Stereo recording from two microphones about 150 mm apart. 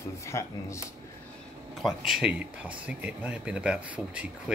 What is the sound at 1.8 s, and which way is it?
Speech, 5° right (ahead or behind).